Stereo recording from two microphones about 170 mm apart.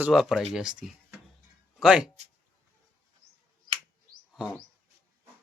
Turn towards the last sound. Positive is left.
turn(degrees=-5)  # may be behind; listen again after turning